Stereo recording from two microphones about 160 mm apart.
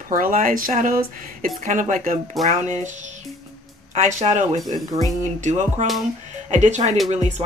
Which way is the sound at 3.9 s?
50° right (ahead or behind).